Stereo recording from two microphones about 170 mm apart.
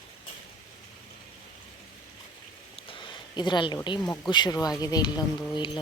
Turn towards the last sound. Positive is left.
turn(degrees=25)  # may be behind; listen again after turning